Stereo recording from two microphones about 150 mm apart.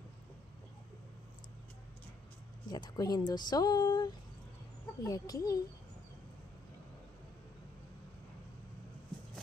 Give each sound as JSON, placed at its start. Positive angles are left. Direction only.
{"t": 2.7, "sound": "speech", "side_deg": 25}